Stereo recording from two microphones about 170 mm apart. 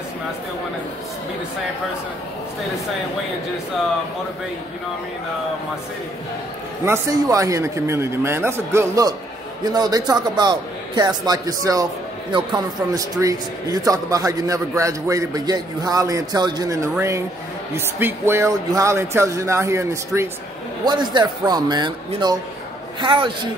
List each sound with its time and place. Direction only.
6.9 s a man's voice: 20° right (ahead or behind)